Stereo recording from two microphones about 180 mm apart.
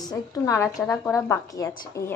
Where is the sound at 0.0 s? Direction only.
20° left (ahead or behind).